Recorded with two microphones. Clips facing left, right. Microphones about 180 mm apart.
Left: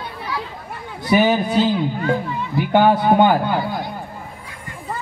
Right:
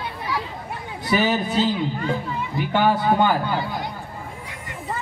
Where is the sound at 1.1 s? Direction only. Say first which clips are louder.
Left 5 dB; 55° left (ahead or behind).